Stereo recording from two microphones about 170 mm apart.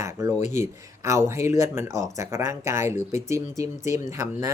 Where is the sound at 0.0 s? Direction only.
20° right (ahead or behind).